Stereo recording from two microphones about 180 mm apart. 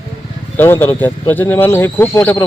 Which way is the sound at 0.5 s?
10° left (ahead or behind).